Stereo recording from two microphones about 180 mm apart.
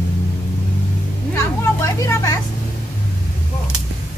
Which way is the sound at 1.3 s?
15° left (ahead or behind).